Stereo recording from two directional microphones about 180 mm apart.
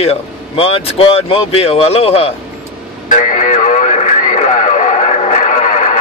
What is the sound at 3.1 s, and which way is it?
Radio, 45° left (ahead or behind).